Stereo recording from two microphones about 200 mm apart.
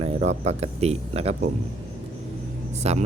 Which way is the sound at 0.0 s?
30° right (ahead or behind).